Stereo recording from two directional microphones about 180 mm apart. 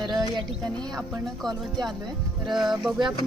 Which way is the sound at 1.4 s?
Centre (ahead or behind).